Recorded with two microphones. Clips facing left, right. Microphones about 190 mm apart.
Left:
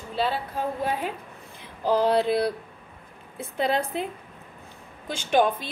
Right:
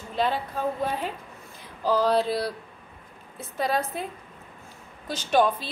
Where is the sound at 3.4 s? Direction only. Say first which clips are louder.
Left 2 dB; 55° left (ahead or behind).